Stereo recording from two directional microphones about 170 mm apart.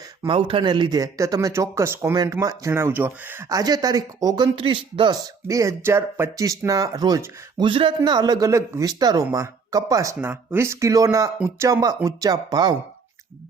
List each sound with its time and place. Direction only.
0.2 s speech: 30° right (ahead or behind)